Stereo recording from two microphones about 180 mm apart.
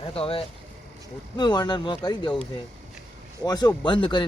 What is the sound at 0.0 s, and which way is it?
A man's voice, 30° left (ahead or behind).